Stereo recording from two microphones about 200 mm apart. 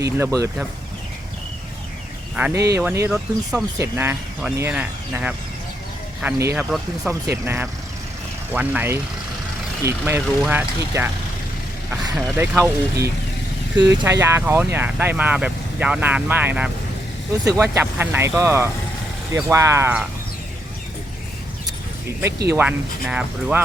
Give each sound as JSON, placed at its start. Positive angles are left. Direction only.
{"t": 0.0, "sound": "speech", "side_deg": -15}
{"t": 2.3, "sound": "speech", "side_deg": -5}
{"t": 2.6, "sound": "speech", "side_deg": -15}
{"t": 22.5, "sound": "speech", "side_deg": -5}